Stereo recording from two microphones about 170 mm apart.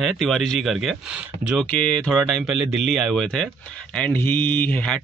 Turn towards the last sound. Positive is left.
turn(degrees=10)  # may be behind; listen again after turning